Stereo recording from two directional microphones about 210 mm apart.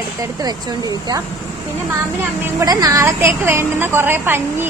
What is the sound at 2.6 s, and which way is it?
A woman's voice, 15° right (ahead or behind).